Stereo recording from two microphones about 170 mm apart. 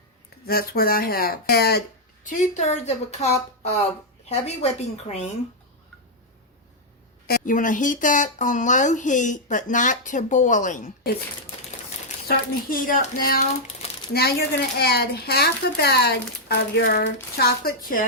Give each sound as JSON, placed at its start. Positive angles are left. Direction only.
{"t": 0.4, "sound": "speech", "side_deg": 65}
{"t": 2.2, "sound": "a woman's voice", "side_deg": 45}
{"t": 7.3, "sound": "speech", "side_deg": 55}
{"t": 12.3, "sound": "a woman's voice", "side_deg": 55}
{"t": 16.8, "sound": "speech", "side_deg": 65}